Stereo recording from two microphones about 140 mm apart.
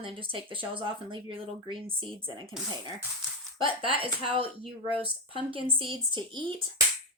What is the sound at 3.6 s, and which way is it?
Speech, 40° right (ahead or behind).